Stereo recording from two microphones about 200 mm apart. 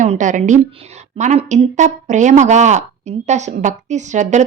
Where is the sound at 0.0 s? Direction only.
40° right (ahead or behind).